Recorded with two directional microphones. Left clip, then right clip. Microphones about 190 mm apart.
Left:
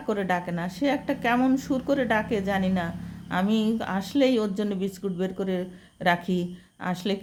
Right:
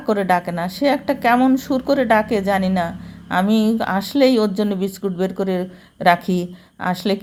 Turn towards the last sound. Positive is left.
turn(degrees=-20)  # may be behind; listen again after turning